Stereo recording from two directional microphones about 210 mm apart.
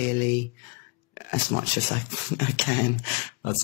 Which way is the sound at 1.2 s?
40° left (ahead or behind).